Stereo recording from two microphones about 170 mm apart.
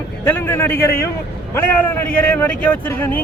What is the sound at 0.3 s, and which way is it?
Speech, 10° left (ahead or behind).